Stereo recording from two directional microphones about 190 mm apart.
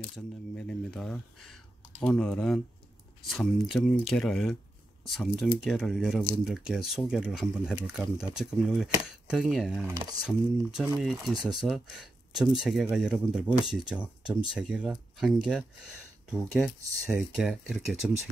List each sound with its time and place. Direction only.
0.1 s speech: 5° left (ahead or behind)
9.8 s speech: 20° right (ahead or behind)
10.2 s speech: 5° right (ahead or behind)